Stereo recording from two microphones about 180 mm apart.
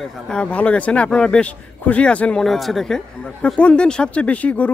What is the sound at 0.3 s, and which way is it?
Speech, 5° left (ahead or behind).